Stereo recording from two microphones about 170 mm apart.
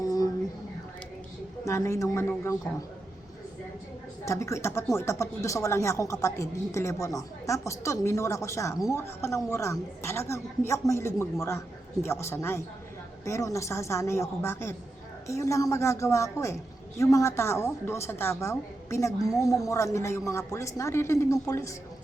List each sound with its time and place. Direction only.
0.0 s a sound: 20° left (ahead or behind)
1.6 s speech: 15° left (ahead or behind)
4.3 s speech: 15° left (ahead or behind)